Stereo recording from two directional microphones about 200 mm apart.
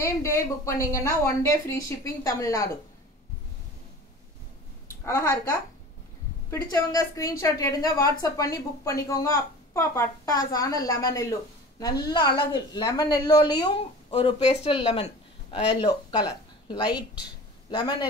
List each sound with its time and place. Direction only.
0.0 s a woman's voice: 15° left (ahead or behind)
4.8 s a sound: 15° left (ahead or behind)
6.5 s a woman's voice: 20° left (ahead or behind)
12.5 s speech: 20° left (ahead or behind)